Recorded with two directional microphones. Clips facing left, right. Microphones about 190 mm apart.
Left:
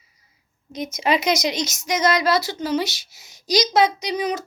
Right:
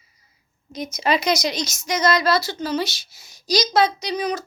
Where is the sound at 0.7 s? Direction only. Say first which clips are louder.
Even; 20° left (ahead or behind).